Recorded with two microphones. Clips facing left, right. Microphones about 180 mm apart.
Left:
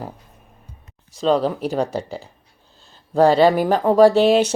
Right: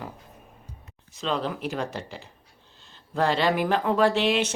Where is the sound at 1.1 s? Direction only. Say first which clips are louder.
Left 10 dB; 35° left (ahead or behind).